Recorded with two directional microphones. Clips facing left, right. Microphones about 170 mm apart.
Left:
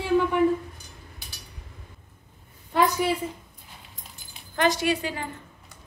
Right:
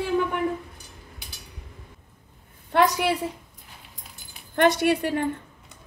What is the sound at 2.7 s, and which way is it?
Speech, 70° right (ahead or behind).